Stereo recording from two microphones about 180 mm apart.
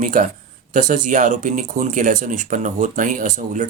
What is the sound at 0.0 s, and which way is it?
Speech, 45° right (ahead or behind).